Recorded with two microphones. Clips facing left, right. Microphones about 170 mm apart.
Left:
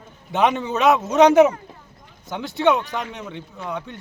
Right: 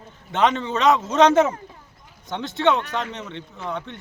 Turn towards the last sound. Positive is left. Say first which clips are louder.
# even
turn(degrees=10)  # may be behind; listen again after turning